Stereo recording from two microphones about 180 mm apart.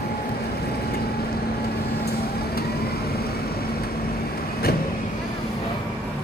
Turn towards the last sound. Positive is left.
turn(degrees=60)  # may be behind; listen again after turning